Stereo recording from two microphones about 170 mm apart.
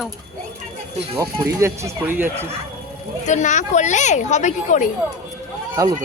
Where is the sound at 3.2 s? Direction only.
45° left (ahead or behind).